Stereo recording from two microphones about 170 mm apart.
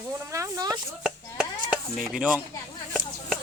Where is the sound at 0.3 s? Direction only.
20° right (ahead or behind).